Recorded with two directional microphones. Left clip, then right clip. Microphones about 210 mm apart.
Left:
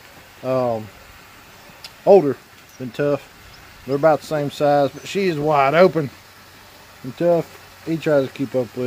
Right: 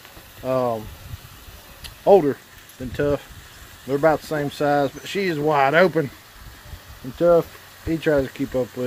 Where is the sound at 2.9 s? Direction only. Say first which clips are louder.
Left 2 dB; 15° left (ahead or behind).